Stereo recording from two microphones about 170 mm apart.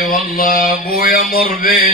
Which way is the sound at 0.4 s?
60° left (ahead or behind).